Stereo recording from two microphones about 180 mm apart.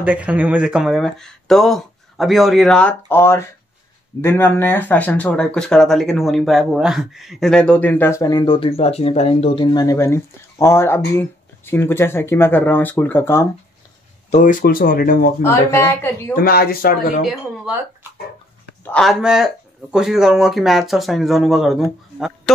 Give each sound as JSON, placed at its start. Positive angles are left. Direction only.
{"t": 0.0, "sound": "speech", "side_deg": -10}
{"t": 14.3, "sound": "speech", "side_deg": 45}
{"t": 15.4, "sound": "speech", "side_deg": 15}
{"t": 16.3, "sound": "speech", "side_deg": 55}
{"t": 18.9, "sound": "speech", "side_deg": 0}